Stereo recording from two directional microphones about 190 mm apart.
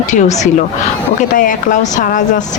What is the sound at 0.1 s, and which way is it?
Speech, 40° left (ahead or behind).